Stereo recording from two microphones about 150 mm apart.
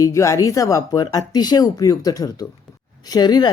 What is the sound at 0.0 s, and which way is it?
Speech, 20° left (ahead or behind).